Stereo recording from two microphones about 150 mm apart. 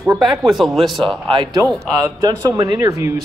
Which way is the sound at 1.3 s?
35° right (ahead or behind).